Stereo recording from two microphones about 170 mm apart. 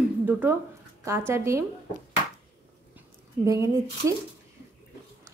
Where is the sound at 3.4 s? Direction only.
15° right (ahead or behind).